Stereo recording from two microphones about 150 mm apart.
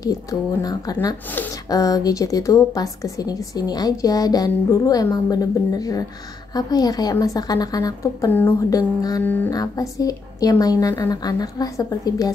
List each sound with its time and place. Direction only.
0.0 s a woman's voice: 25° left (ahead or behind)
9.2 s music: 10° left (ahead or behind)
9.5 s a woman's voice: 25° left (ahead or behind)